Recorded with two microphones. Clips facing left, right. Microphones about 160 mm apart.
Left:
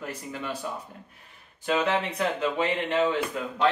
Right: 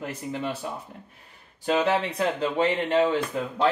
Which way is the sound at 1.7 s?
35° right (ahead or behind).